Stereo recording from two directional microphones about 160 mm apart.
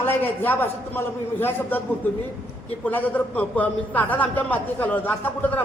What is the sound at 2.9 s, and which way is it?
A man's voice, 10° left (ahead or behind).